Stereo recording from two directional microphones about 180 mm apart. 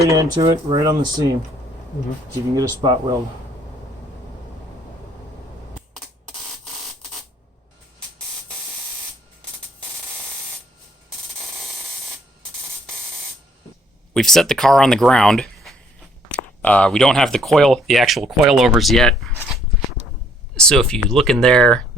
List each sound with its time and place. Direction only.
0.0 s speech: 15° right (ahead or behind)
2.6 s speech: 20° right (ahead or behind)
14.1 s speech: centre (ahead or behind)
20.6 s speech: 5° left (ahead or behind)